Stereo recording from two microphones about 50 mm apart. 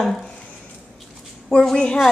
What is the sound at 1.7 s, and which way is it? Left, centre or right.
Speech, centre.